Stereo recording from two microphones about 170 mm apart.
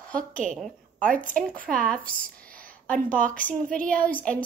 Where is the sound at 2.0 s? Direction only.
55° right (ahead or behind).